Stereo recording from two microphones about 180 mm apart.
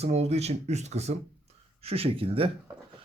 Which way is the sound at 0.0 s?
35° right (ahead or behind).